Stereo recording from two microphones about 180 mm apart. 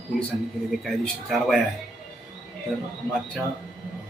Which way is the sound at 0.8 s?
Centre (ahead or behind).